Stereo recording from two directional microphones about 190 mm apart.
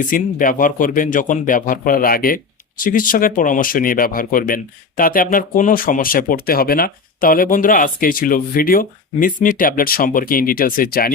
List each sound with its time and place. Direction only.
0.0 s speech: 45° left (ahead or behind)